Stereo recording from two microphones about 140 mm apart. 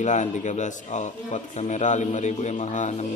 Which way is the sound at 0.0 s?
60° left (ahead or behind).